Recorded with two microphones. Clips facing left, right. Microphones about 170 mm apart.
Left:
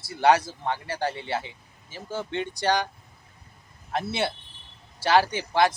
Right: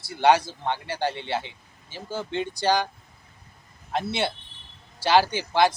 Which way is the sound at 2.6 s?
Centre (ahead or behind).